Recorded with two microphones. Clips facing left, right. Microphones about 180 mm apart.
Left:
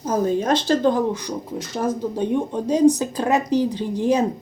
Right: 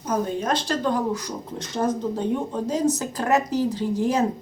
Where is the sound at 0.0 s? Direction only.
30° left (ahead or behind).